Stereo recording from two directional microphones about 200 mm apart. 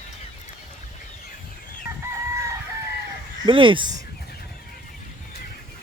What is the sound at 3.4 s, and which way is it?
Speech, 25° right (ahead or behind).